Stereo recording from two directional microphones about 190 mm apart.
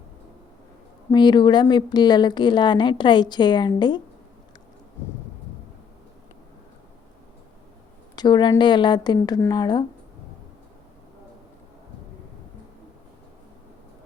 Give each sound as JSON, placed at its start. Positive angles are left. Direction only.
{"t": 1.1, "sound": "a woman's voice", "side_deg": 20}
{"t": 8.1, "sound": "a woman's voice", "side_deg": 20}